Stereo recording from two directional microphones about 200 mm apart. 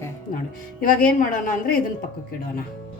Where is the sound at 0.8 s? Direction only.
45° left (ahead or behind).